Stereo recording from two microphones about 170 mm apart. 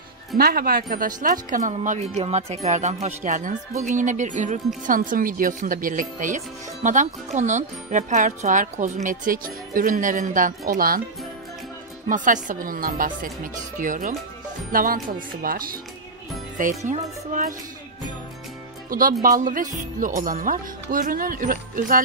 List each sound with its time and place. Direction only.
0.4 s speech: 60° right (ahead or behind)
12.1 s speech: 50° right (ahead or behind)
18.9 s speech: 55° right (ahead or behind)